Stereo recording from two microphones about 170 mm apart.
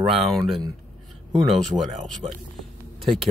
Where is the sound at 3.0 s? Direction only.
Centre (ahead or behind).